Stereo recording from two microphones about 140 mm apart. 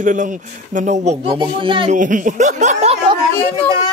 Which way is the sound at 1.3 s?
35° right (ahead or behind).